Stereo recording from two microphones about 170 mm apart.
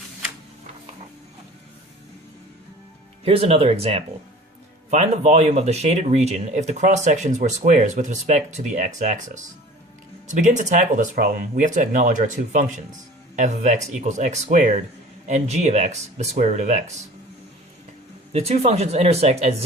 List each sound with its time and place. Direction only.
3.2 s speech: 35° right (ahead or behind)
18.3 s speech: 35° right (ahead or behind)